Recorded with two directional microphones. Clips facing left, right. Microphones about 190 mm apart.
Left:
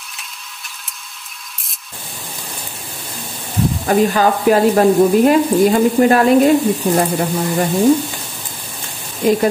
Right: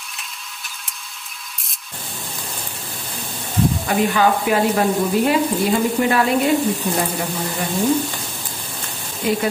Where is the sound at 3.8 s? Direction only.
40° left (ahead or behind).